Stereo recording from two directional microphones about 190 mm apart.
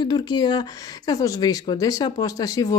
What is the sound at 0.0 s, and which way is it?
Speech, 20° left (ahead or behind).